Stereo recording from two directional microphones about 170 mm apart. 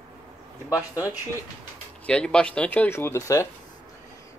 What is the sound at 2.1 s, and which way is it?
Speech, 5° left (ahead or behind).